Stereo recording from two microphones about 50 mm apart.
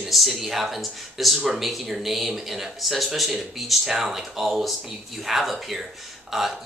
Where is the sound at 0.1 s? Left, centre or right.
Centre.